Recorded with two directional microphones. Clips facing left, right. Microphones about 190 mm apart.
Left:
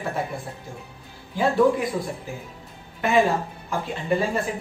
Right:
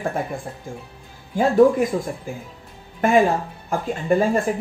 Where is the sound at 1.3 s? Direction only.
50° right (ahead or behind).